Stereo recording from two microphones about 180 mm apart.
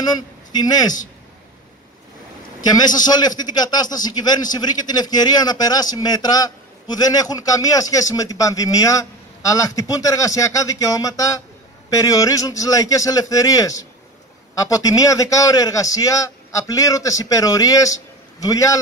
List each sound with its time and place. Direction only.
0.0 s a man's voice: 20° left (ahead or behind)
2.7 s a man's voice: 20° left (ahead or behind)